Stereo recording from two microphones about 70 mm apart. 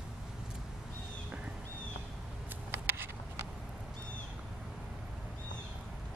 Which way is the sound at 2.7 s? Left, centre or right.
Right.